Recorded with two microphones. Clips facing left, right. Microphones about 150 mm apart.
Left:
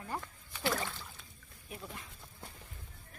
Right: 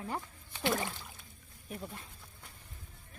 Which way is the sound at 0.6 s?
20° right (ahead or behind).